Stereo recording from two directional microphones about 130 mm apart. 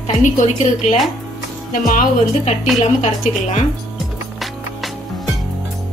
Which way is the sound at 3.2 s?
65° left (ahead or behind).